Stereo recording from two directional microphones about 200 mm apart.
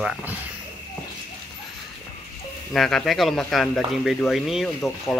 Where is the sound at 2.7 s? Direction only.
Centre (ahead or behind).